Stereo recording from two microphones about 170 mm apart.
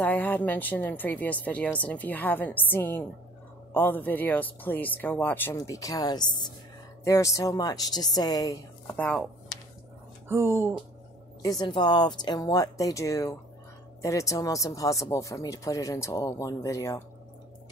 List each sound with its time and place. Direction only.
0.0 s speech: 10° left (ahead or behind)
8.9 s speech: 10° left (ahead or behind)
10.2 s speech: 15° right (ahead or behind)
11.4 s speech: 25° left (ahead or behind)